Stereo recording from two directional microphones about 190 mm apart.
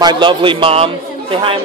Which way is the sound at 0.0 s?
25° right (ahead or behind).